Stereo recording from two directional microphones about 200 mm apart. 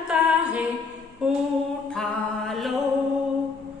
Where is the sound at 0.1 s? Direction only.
5° right (ahead or behind).